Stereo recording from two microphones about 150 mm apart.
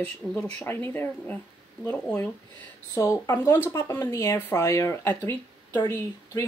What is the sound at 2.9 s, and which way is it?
Speech, 15° left (ahead or behind).